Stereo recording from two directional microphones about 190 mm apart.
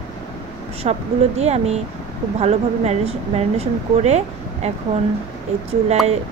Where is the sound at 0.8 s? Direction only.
35° right (ahead or behind).